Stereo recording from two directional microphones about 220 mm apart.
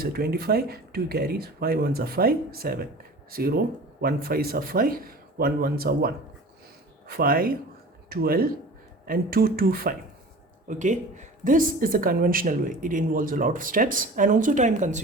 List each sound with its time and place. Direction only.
0.0 s a woman's voice: 45° right (ahead or behind)
7.1 s a woman's voice: 40° right (ahead or behind)